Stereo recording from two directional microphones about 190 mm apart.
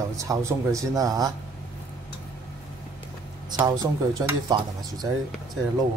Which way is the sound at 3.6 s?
20° right (ahead or behind).